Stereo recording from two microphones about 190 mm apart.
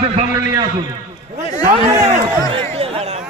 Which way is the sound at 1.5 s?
40° right (ahead or behind).